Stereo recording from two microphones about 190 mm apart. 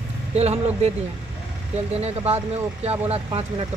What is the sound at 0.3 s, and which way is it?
Speech, 35° right (ahead or behind).